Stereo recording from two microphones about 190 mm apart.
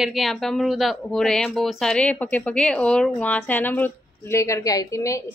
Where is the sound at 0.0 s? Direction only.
Centre (ahead or behind).